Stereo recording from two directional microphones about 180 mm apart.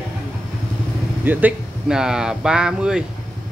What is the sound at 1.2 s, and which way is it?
A man's voice, 10° right (ahead or behind).